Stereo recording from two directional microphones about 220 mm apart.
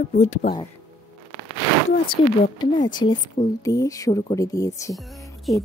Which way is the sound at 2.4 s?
20° left (ahead or behind).